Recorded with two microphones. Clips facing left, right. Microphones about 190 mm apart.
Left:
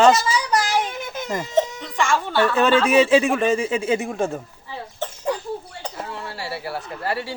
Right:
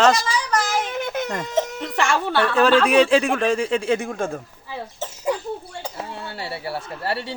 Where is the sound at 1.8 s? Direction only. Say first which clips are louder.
Even; 70° right (ahead or behind).